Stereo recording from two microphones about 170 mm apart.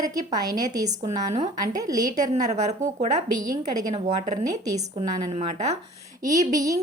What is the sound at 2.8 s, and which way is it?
Speech, 45° right (ahead or behind).